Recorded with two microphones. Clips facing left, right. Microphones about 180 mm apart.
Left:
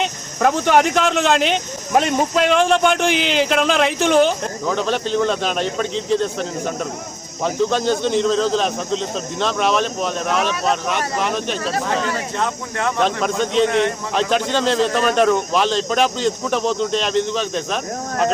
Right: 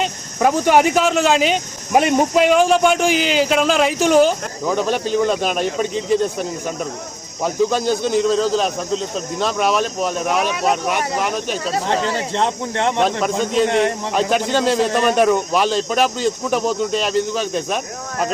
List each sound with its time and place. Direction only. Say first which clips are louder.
0.0 s speech: right 1 dB; 5° right (ahead or behind)
11.7 s speech: right 3 dB; 30° right (ahead or behind)
13.4 s a man's voice: even; 5° right (ahead or behind)